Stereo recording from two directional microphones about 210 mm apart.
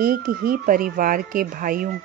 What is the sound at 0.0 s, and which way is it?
Speech, 45° right (ahead or behind).